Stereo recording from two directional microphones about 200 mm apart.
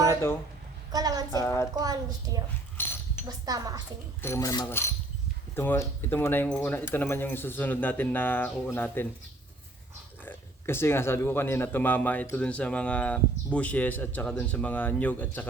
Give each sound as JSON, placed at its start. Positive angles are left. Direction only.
{"t": 0.9, "sound": "a woman's voice", "side_deg": -20}
{"t": 1.3, "sound": "a man's voice", "side_deg": 15}
{"t": 1.7, "sound": "a woman's voice", "side_deg": -20}
{"t": 2.7, "sound": "dog", "side_deg": 10}
{"t": 3.2, "sound": "a woman's voice", "side_deg": -20}
{"t": 4.2, "sound": "a man's voice", "side_deg": 15}
{"t": 10.2, "sound": "a man's voice", "side_deg": 10}